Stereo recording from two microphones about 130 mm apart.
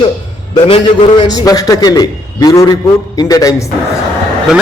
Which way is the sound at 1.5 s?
30° left (ahead or behind).